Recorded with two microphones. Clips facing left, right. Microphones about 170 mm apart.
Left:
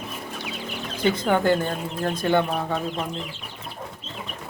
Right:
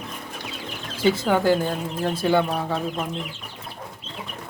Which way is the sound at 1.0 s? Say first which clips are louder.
Right 1 dB; 5° right (ahead or behind).